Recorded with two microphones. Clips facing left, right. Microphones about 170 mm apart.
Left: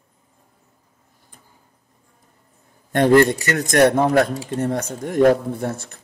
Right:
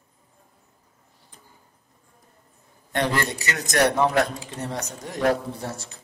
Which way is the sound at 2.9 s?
50° left (ahead or behind).